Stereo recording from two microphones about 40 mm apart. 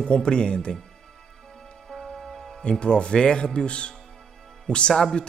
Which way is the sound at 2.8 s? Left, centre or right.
Left.